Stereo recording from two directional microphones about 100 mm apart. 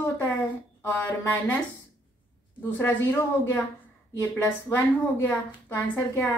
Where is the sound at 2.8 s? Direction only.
20° left (ahead or behind).